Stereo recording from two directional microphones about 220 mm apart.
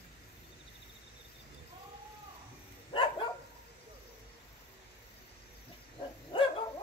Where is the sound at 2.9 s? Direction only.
20° left (ahead or behind).